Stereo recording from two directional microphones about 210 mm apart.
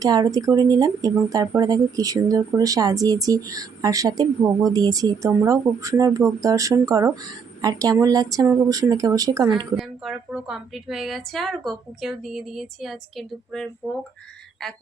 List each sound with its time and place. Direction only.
0.0 s speech: 20° right (ahead or behind)
9.7 s speech: centre (ahead or behind)